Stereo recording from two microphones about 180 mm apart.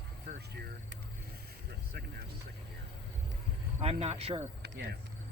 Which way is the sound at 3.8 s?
35° right (ahead or behind).